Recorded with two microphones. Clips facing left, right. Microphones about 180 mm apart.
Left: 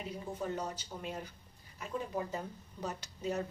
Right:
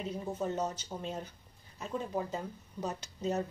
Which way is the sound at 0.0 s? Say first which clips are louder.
Right 4 dB; 25° right (ahead or behind).